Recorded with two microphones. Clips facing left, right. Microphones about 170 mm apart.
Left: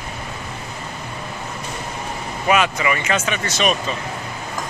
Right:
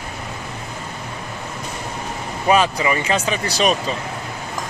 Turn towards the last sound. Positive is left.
turn(degrees=-35)  # may be behind; listen again after turning